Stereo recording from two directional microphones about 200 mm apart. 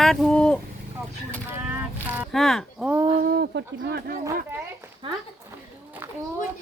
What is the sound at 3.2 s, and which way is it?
Speech, 55° right (ahead or behind).